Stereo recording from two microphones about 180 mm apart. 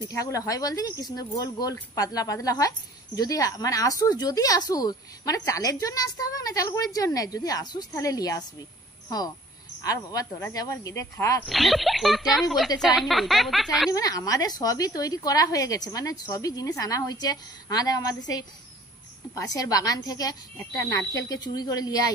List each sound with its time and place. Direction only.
0.1 s a woman's voice: 20° left (ahead or behind)
9.8 s a woman's voice: 20° left (ahead or behind)
11.4 s speech: centre (ahead or behind)
13.9 s a woman's voice: 20° left (ahead or behind)